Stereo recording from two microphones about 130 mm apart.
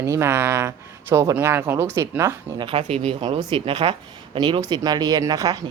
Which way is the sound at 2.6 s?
45° right (ahead or behind).